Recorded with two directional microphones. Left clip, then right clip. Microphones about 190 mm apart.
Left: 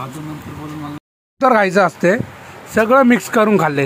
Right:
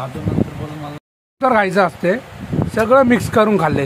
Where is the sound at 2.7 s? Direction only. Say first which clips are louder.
Left 1 dB; 10° left (ahead or behind).